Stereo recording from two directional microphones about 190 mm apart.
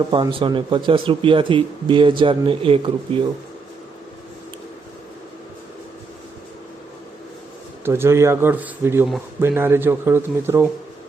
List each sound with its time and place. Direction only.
0.1 s speech: 25° right (ahead or behind)
7.9 s a man's voice: 15° right (ahead or behind)